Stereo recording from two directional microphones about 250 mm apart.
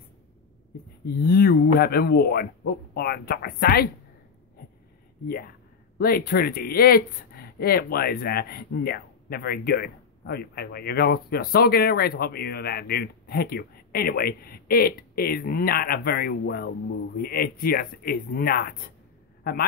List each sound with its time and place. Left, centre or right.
1.0 s speech: left
5.9 s speech: left